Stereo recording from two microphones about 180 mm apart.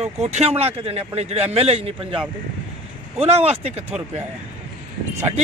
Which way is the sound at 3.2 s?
35° right (ahead or behind).